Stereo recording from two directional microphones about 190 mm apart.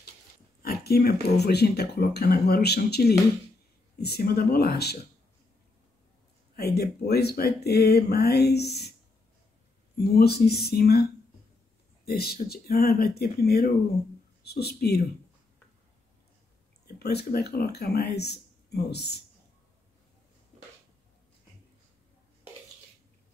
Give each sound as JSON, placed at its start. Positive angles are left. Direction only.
{"t": 0.6, "sound": "speech", "side_deg": 55}
{"t": 6.5, "sound": "speech", "side_deg": 55}
{"t": 9.9, "sound": "speech", "side_deg": 55}
{"t": 16.8, "sound": "speech", "side_deg": 55}